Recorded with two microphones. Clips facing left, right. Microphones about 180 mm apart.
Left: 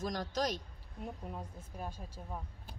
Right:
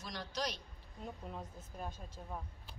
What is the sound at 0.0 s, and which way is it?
Speech, 45° left (ahead or behind).